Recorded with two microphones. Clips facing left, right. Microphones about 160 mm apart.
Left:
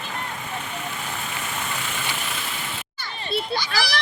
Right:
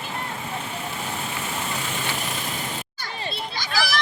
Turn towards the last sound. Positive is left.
turn(degrees=-45)  # may be behind; listen again after turning